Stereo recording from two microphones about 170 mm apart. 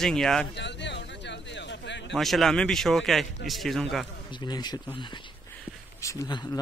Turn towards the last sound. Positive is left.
turn(degrees=20)  # may be behind; listen again after turning